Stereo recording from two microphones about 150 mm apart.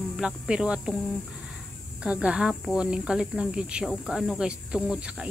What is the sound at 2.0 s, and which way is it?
Cricket, 5° right (ahead or behind).